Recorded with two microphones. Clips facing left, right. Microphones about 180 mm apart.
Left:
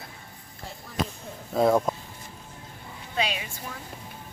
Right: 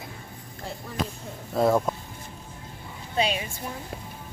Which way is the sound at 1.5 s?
Centre (ahead or behind).